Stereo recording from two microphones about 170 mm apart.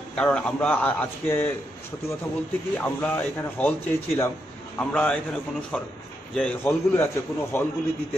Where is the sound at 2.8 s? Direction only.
10° left (ahead or behind).